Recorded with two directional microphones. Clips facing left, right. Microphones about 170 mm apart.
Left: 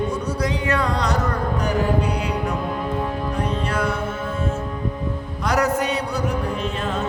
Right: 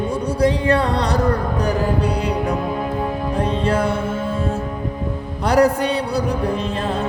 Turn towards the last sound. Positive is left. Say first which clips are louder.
# right 2 dB
turn(degrees=-30)  # may be behind; listen again after turning